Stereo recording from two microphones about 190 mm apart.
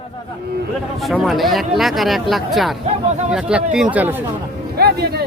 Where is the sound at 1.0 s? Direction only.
Centre (ahead or behind).